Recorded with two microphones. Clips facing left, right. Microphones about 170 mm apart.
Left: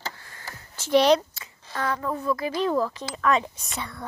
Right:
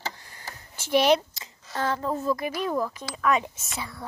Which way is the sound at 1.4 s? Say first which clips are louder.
Right 1 dB; 25° right (ahead or behind).